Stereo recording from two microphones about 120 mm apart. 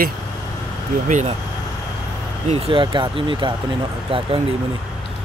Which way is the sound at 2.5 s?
45° right (ahead or behind).